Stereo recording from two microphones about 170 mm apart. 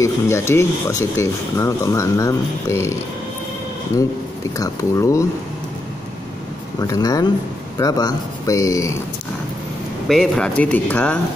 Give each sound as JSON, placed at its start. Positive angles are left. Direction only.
{"t": 0.0, "sound": "speech", "side_deg": 15}
{"t": 4.6, "sound": "speech", "side_deg": 20}
{"t": 6.8, "sound": "speech", "side_deg": 20}
{"t": 10.0, "sound": "speech", "side_deg": 0}